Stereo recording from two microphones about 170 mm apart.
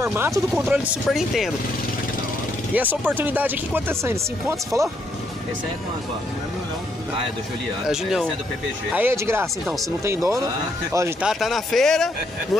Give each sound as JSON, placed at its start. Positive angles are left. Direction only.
{"t": 0.0, "sound": "speech", "side_deg": -15}
{"t": 2.7, "sound": "speech", "side_deg": -10}
{"t": 7.8, "sound": "speech", "side_deg": -5}
{"t": 8.9, "sound": "speech", "side_deg": -15}
{"t": 9.7, "sound": "speech", "side_deg": 0}
{"t": 10.0, "sound": "speech", "side_deg": -20}